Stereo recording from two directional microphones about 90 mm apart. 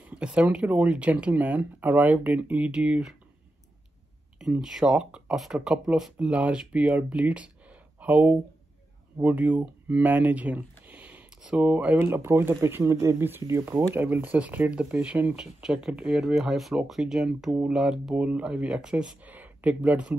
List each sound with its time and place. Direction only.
0.0 s speech: 10° right (ahead or behind)
4.4 s speech: 5° right (ahead or behind)
10.9 s a sound: 15° right (ahead or behind)
12.0 s speech: 30° right (ahead or behind)